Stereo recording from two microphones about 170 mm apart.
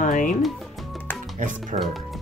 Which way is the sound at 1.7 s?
45° right (ahead or behind).